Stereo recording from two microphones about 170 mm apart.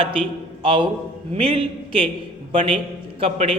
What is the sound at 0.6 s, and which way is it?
A man's voice, 30° right (ahead or behind).